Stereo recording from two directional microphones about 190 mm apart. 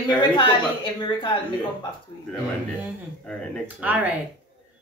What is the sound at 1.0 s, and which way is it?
Speech, 25° left (ahead or behind).